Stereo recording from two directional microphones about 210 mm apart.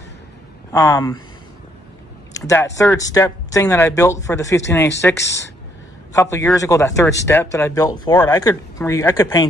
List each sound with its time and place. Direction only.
0.7 s speech: 15° left (ahead or behind)
2.3 s speech: 15° left (ahead or behind)
6.1 s speech: 15° left (ahead or behind)